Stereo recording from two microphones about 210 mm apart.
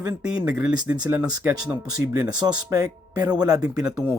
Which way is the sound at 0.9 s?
15° right (ahead or behind).